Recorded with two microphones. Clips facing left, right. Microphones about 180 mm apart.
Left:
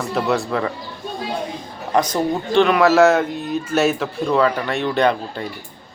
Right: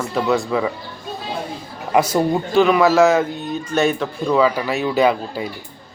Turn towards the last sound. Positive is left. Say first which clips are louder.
# right 1 dB
turn(degrees=-5)  # may be behind; listen again after turning